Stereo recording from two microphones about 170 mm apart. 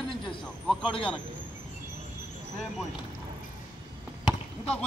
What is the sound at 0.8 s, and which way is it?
Speech, 30° left (ahead or behind).